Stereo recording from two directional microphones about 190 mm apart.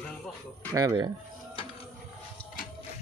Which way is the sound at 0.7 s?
20° right (ahead or behind).